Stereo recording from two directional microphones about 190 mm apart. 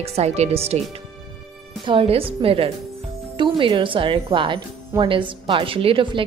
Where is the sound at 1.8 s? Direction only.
30° right (ahead or behind).